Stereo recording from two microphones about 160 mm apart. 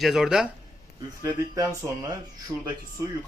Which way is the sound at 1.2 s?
20° right (ahead or behind).